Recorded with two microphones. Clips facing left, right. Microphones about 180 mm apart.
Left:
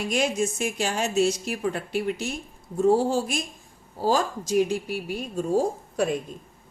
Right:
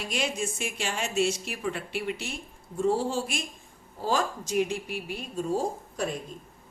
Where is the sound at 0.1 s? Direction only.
45° left (ahead or behind).